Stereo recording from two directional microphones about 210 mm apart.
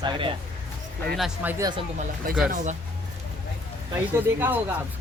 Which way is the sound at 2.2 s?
40° right (ahead or behind).